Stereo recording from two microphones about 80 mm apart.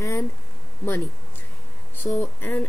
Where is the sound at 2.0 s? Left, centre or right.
Left.